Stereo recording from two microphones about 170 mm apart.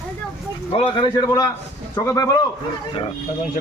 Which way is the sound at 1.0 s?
25° left (ahead or behind).